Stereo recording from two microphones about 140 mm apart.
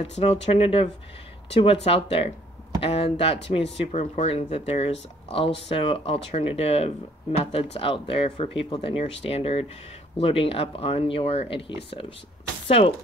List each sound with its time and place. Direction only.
0.0 s speech: 45° left (ahead or behind)